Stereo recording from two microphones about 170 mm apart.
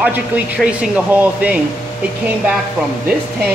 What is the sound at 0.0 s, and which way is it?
Speech, 10° right (ahead or behind).